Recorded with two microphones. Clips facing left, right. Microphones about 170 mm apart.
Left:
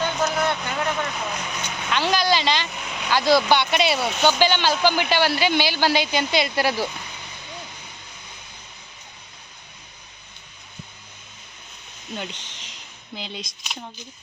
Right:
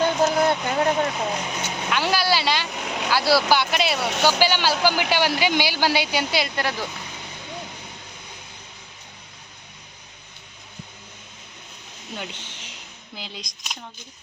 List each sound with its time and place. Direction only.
0.0 s vehicle: 35° right (ahead or behind)
1.9 s a sound: 10° right (ahead or behind)
3.1 s speech: 10° right (ahead or behind)
6.6 s speech: 10° left (ahead or behind)
12.1 s a sound: 10° right (ahead or behind)
13.1 s speech: centre (ahead or behind)